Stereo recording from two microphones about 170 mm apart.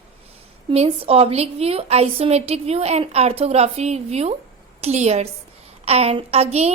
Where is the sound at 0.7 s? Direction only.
35° right (ahead or behind).